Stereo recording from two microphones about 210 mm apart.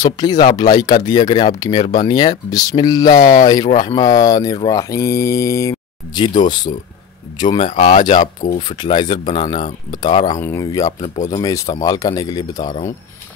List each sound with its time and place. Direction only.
0.0 s speech: 20° left (ahead or behind)
1.8 s speech: 35° left (ahead or behind)
2.0 s speech: 20° left (ahead or behind); by 8.7 s 35° left (ahead or behind)
8.7 s speech: 20° left (ahead or behind)